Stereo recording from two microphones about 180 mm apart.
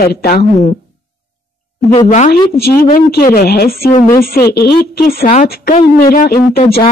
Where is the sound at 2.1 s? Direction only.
50° left (ahead or behind).